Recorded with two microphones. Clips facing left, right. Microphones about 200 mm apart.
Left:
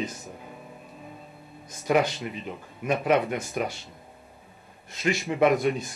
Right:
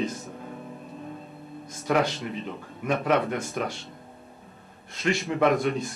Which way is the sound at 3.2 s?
15° left (ahead or behind).